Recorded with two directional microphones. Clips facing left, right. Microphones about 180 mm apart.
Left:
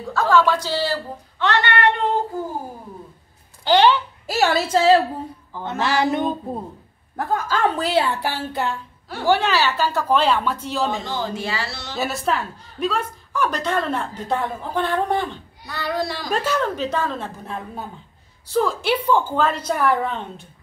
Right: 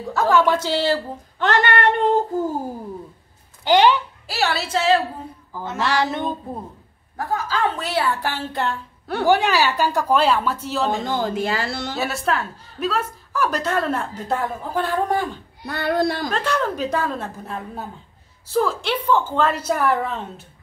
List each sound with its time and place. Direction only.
0.1 s speech: 20° right (ahead or behind)
1.4 s child singing: 50° right (ahead or behind)
3.6 s a child's voice: 15° right (ahead or behind)
4.3 s a woman's voice: 45° left (ahead or behind)
5.8 s music: 5° left (ahead or behind)
7.2 s a woman's voice: 50° left (ahead or behind)
7.7 s a woman's voice: 30° left (ahead or behind)
9.2 s a woman's voice: 15° right (ahead or behind); by 11.1 s centre (ahead or behind)
11.1 s speech: 55° right (ahead or behind)
12.0 s a woman's voice: centre (ahead or behind)
15.6 s speech: 60° right (ahead or behind)
16.3 s a woman's voice: 5° left (ahead or behind)
18.9 s music: 10° left (ahead or behind)
19.4 s a woman's voice: 5° right (ahead or behind)